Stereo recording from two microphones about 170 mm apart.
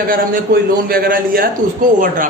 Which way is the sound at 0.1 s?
60° right (ahead or behind).